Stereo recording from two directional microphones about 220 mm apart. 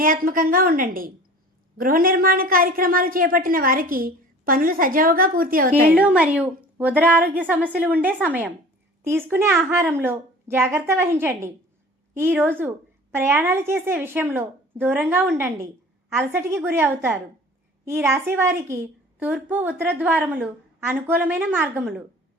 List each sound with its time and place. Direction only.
0.0 s a woman's voice: 40° right (ahead or behind)
6.0 s a woman's voice: 5° right (ahead or behind)